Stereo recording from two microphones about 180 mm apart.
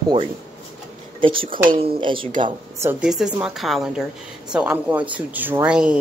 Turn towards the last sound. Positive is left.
turn(degrees=-5)  # may be behind; listen again after turning